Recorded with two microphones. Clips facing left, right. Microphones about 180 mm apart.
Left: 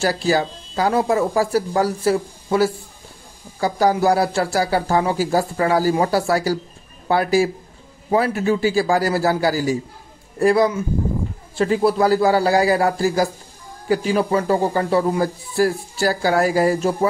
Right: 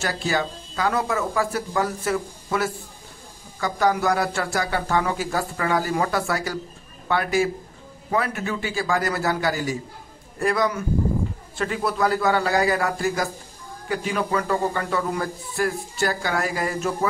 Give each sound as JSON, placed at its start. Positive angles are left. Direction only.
{"t": 0.0, "sound": "a man's voice", "side_deg": 35}